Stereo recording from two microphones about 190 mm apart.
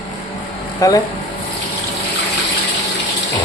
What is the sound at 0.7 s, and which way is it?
Speech, 20° left (ahead or behind).